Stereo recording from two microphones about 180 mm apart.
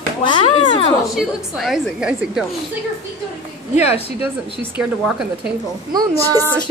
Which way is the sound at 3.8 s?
35° left (ahead or behind).